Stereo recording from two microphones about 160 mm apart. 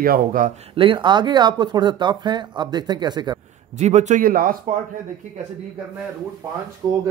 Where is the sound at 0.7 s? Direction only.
30° right (ahead or behind).